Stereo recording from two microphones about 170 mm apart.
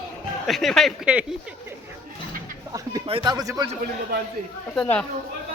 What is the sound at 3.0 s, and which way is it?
Speech, 30° right (ahead or behind).